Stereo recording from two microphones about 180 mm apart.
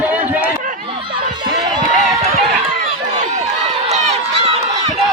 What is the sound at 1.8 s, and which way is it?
Run, 45° right (ahead or behind).